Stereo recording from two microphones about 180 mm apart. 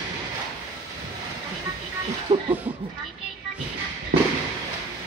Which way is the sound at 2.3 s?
30° right (ahead or behind).